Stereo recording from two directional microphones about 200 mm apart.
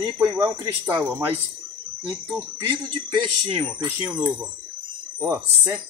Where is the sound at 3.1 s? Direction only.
25° right (ahead or behind).